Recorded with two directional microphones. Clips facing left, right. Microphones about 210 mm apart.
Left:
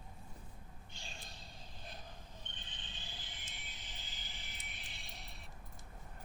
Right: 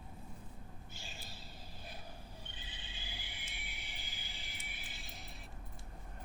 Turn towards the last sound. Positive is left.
turn(degrees=0)  # may be behind; listen again after turning